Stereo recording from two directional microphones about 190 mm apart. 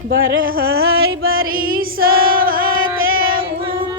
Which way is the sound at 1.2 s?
90° right.